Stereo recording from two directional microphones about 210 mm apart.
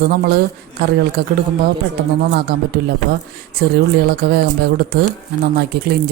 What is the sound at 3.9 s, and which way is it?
Speech, 50° right (ahead or behind).